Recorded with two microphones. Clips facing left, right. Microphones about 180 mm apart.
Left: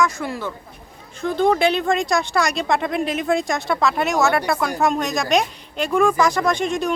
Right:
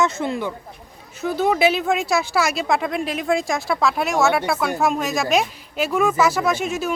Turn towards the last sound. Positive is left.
turn(degrees=-5)  # may be behind; listen again after turning